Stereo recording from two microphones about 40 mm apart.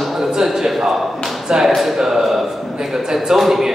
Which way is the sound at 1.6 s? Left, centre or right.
Centre.